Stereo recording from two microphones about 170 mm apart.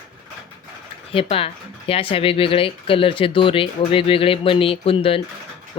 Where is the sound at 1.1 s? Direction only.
35° left (ahead or behind).